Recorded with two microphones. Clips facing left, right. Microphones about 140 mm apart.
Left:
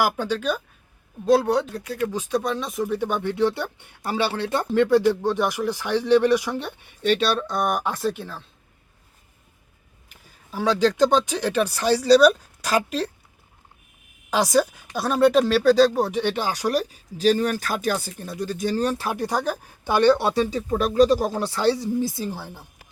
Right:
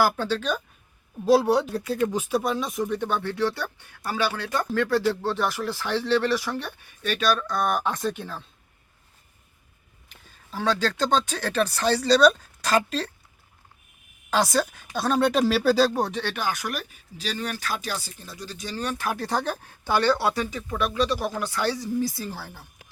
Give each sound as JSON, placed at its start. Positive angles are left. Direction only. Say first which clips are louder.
{"t": 0.0, "sound": "speech", "louder": "even", "side_deg": 15}
{"t": 1.2, "sound": "speech", "louder": "even", "side_deg": -5}
{"t": 10.1, "sound": "speech", "louder": "left 2 dB", "side_deg": 10}
{"t": 14.3, "sound": "speech", "louder": "left 3 dB", "side_deg": 15}
{"t": 16.2, "sound": "speech", "louder": "left 5 dB", "side_deg": 25}
{"t": 19.1, "sound": "speech", "louder": "left 3 dB", "side_deg": 15}